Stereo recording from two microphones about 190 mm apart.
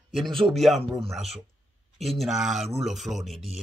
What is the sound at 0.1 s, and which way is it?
Speech, centre (ahead or behind).